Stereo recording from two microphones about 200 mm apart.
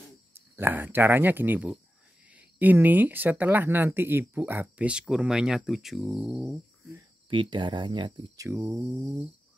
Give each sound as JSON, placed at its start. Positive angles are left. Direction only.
{"t": 0.3, "sound": "speech", "side_deg": -10}
{"t": 7.2, "sound": "speech", "side_deg": -25}
{"t": 8.5, "sound": "speech", "side_deg": -15}